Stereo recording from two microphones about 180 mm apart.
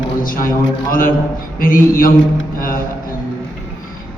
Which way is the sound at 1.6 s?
50° left (ahead or behind).